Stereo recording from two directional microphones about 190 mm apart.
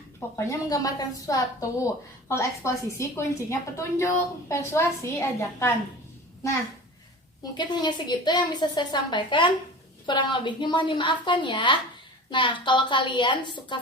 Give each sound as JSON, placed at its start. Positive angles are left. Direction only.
{"t": 0.3, "sound": "a woman's voice", "side_deg": 15}
{"t": 7.5, "sound": "a woman's voice", "side_deg": 25}